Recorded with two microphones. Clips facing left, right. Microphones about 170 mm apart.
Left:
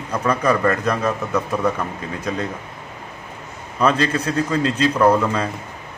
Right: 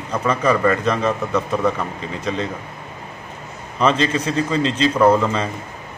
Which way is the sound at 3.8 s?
10° left (ahead or behind).